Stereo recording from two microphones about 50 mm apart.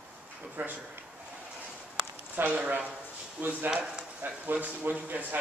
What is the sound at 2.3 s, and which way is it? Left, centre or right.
Speech, right.